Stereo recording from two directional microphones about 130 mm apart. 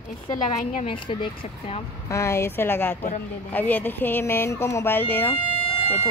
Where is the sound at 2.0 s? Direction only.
20° left (ahead or behind).